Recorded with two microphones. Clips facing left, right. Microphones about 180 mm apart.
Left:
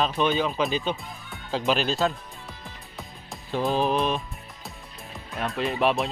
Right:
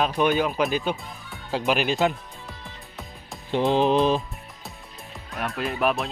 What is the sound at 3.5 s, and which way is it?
Music, 20° right (ahead or behind).